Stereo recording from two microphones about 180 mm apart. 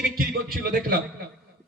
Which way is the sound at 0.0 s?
55° right (ahead or behind).